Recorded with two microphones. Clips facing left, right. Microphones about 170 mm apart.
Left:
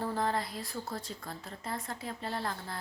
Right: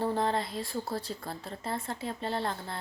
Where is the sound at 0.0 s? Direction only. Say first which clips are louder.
Right 3 dB; 25° right (ahead or behind).